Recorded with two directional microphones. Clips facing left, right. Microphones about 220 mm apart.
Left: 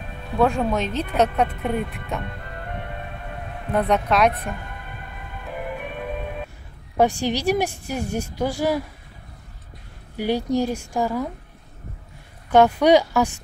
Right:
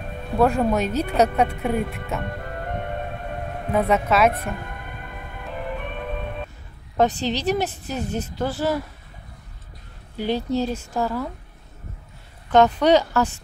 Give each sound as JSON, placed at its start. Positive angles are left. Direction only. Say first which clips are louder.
{"t": 0.4, "sound": "a woman's voice", "louder": "right 1 dB", "side_deg": -5}
{"t": 2.2, "sound": "music", "louder": "right 4 dB", "side_deg": -50}
{"t": 3.7, "sound": "a woman's voice", "louder": "even", "side_deg": -5}
{"t": 4.3, "sound": "speech", "louder": "right 2 dB", "side_deg": -45}
{"t": 5.5, "sound": "music", "louder": "even", "side_deg": 10}
{"t": 7.0, "sound": "speech", "louder": "left 1 dB", "side_deg": 10}
{"t": 10.1, "sound": "speech", "louder": "left 1 dB", "side_deg": 10}
{"t": 12.4, "sound": "speech", "louder": "left 1 dB", "side_deg": 10}